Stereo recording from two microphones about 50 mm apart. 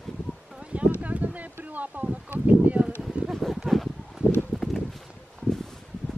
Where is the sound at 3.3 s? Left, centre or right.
Centre.